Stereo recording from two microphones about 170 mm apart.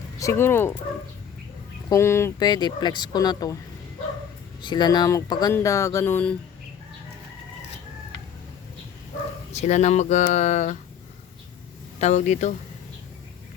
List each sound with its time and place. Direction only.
0.2 s a sound: 15° left (ahead or behind)
1.9 s speech: 15° left (ahead or behind)
4.6 s speech: 25° left (ahead or behind)
5.5 s a sound: 15° left (ahead or behind)
9.5 s speech: 40° left (ahead or behind)
11.9 s speech: 45° left (ahead or behind)